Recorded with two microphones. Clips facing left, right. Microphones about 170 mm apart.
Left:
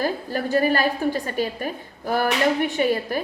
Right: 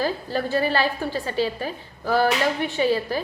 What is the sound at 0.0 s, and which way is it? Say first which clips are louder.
Speech: even; 15° left (ahead or behind).